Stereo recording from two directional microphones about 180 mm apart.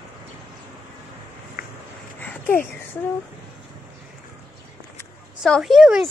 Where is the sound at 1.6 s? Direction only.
55° left (ahead or behind).